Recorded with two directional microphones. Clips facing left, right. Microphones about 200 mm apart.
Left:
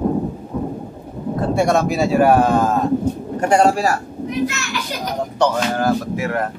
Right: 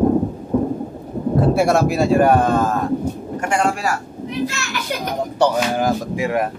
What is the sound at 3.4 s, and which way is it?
Speech, 35° left (ahead or behind).